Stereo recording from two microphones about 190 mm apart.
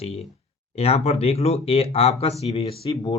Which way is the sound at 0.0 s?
35° left (ahead or behind).